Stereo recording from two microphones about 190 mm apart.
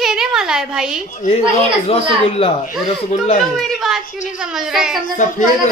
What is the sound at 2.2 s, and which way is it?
Speech, 30° left (ahead or behind).